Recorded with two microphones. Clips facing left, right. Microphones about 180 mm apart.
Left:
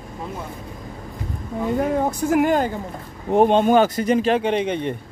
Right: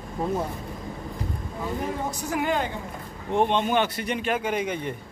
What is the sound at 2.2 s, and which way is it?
A woman's voice, 45° left (ahead or behind).